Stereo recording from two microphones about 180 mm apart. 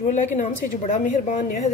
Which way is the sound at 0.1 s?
40° left (ahead or behind).